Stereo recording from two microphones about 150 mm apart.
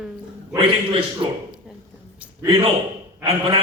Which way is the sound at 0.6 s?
35° right (ahead or behind).